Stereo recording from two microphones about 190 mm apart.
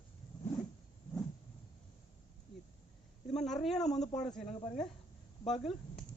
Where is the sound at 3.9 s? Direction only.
35° left (ahead or behind).